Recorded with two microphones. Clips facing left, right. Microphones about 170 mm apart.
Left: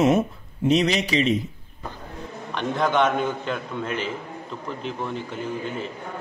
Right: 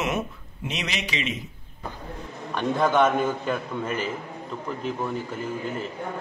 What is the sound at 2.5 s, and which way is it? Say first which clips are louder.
A man's voice: right 1 dB; 10° right (ahead or behind).